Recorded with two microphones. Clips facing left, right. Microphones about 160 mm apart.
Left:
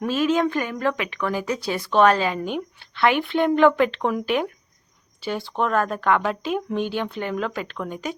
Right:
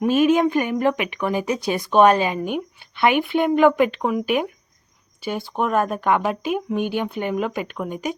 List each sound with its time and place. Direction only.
0.0 s speech: 15° right (ahead or behind)